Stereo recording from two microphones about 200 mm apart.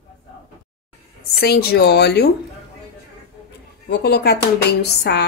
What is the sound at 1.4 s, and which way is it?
Speech, 50° left (ahead or behind).